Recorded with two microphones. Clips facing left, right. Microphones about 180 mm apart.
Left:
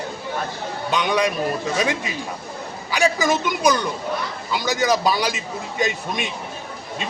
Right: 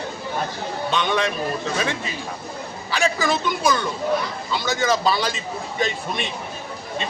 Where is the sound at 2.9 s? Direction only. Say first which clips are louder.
Left 2 dB; 15° left (ahead or behind).